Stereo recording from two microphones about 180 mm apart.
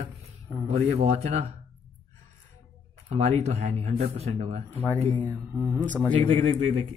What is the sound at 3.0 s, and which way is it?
Speech, 40° right (ahead or behind).